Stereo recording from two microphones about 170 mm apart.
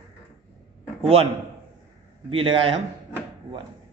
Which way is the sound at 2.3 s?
30° right (ahead or behind).